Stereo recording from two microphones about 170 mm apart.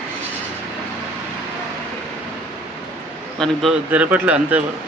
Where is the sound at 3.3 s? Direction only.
Centre (ahead or behind).